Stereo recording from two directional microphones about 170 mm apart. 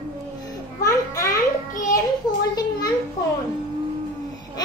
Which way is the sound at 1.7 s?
50° left (ahead or behind).